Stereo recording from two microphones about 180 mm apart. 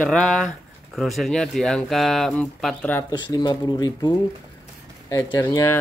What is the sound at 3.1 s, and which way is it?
Speech, 25° left (ahead or behind).